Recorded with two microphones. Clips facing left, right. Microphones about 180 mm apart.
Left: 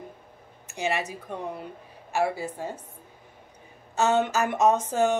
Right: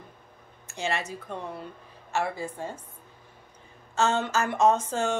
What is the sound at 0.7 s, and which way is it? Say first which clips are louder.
Speech: left 2 dB; 15° left (ahead or behind).